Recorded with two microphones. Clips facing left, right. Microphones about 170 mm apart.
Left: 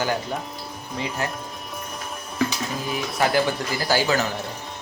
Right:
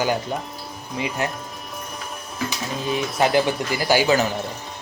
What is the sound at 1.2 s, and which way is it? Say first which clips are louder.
Speech: right 3 dB; 20° right (ahead or behind).